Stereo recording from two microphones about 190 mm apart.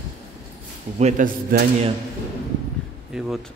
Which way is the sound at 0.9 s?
40° right (ahead or behind).